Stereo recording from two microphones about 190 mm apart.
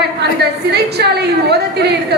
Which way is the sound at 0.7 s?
60° right (ahead or behind).